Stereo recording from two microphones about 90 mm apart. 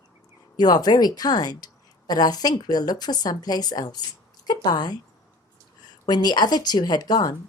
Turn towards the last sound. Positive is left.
turn(degrees=45)  # may be behind; listen again after turning